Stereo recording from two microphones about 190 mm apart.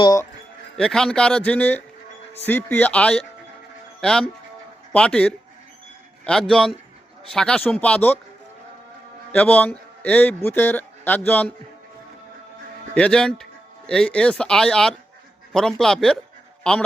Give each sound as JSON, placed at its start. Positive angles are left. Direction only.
{"t": 0.0, "sound": "speech", "side_deg": 15}
{"t": 0.8, "sound": "speech", "side_deg": 5}
{"t": 9.3, "sound": "a man's voice", "side_deg": 10}
{"t": 12.9, "sound": "speech", "side_deg": 5}